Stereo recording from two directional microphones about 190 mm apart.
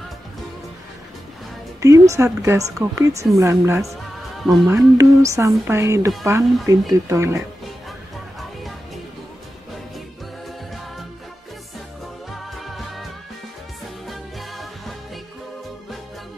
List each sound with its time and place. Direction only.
1.8 s speech: 15° right (ahead or behind)
3.9 s music: centre (ahead or behind)
4.6 s speech: 15° right (ahead or behind)
12.3 s music: centre (ahead or behind)
14.0 s music: centre (ahead or behind)